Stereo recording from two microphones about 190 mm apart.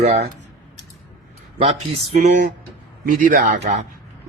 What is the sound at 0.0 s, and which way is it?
Speech, 35° right (ahead or behind).